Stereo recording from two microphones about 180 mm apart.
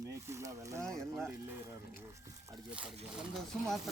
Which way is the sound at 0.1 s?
15° right (ahead or behind).